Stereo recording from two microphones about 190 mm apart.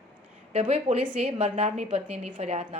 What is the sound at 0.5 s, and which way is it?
A woman's voice, 30° right (ahead or behind).